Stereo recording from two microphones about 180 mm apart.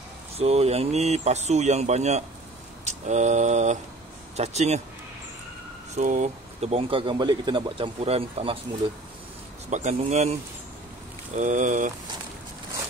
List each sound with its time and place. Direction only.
0.4 s speech: 35° right (ahead or behind)
2.8 s mantra: 40° right (ahead or behind)
4.4 s speech: 40° right (ahead or behind)
5.9 s speech: 40° right (ahead or behind)
9.7 s speech: 40° right (ahead or behind)
11.3 s speech: 45° right (ahead or behind)